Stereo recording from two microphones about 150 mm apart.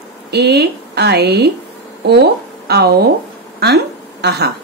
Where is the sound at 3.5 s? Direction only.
90° right.